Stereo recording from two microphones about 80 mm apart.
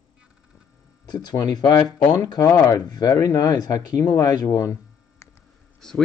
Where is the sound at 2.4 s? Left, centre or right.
Left.